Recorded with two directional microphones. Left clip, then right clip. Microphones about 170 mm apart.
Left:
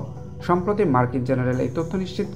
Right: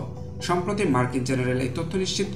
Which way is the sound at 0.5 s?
50° left (ahead or behind).